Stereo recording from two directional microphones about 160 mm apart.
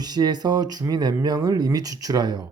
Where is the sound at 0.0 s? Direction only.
25° right (ahead or behind).